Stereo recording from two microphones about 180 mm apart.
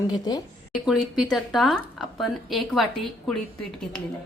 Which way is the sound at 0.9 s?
Centre (ahead or behind).